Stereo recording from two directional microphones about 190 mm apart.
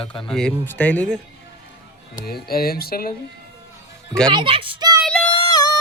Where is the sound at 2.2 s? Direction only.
55° left (ahead or behind).